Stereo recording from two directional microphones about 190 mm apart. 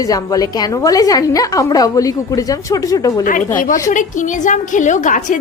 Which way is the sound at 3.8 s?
40° left (ahead or behind).